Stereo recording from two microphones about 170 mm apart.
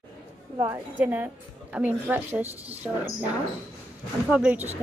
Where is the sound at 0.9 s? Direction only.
10° right (ahead or behind).